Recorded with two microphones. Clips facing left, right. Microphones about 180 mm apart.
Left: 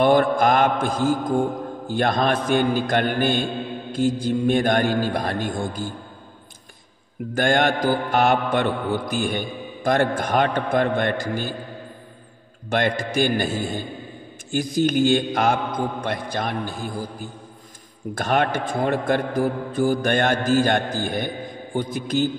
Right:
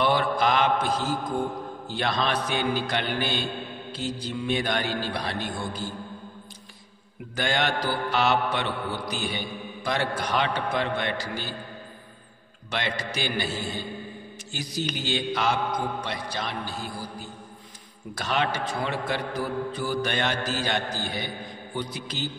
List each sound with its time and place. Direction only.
0.0 s a man's voice: 45° left (ahead or behind)
7.3 s a man's voice: 50° left (ahead or behind)
12.6 s a man's voice: 50° left (ahead or behind)